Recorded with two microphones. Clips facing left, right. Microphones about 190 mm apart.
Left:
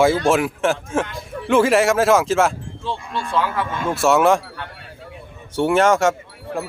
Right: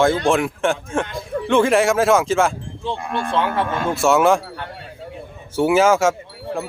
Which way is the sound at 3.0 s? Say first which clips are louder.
Right 3 dB; 60° right (ahead or behind).